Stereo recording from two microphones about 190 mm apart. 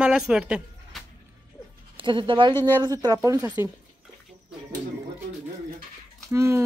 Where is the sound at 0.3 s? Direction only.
5° right (ahead or behind).